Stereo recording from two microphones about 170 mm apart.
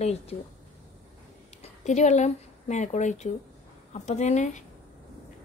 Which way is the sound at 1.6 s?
45° left (ahead or behind).